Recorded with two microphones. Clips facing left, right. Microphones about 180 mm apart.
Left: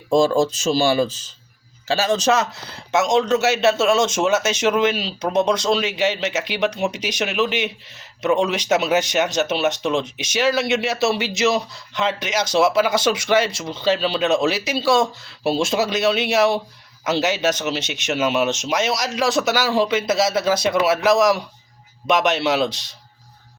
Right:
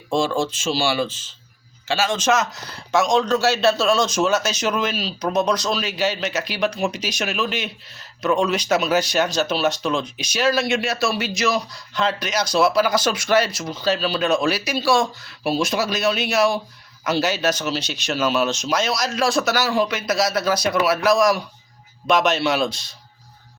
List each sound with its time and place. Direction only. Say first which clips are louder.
0.1 s speech: left 5 dB; 40° left (ahead or behind); by 22.8 s 20° left (ahead or behind)